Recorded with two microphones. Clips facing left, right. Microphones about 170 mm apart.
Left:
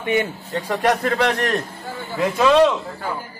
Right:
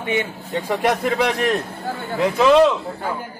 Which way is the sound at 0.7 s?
10° right (ahead or behind).